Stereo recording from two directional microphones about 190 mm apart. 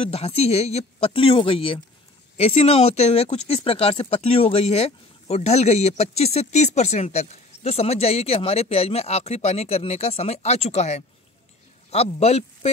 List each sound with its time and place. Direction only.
0.0 s speech: 30° left (ahead or behind)